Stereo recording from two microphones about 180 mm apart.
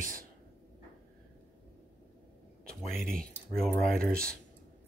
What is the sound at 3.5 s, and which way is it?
Speech, 5° left (ahead or behind).